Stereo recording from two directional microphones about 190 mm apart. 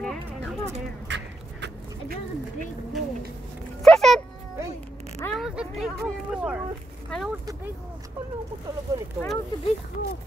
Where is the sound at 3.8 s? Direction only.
Centre (ahead or behind).